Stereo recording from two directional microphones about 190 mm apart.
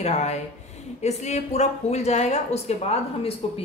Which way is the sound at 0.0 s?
35° left (ahead or behind).